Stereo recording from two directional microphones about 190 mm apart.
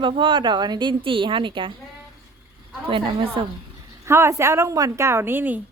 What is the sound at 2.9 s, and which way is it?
Speech, 25° right (ahead or behind).